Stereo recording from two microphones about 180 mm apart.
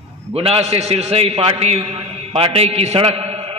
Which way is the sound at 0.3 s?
35° right (ahead or behind).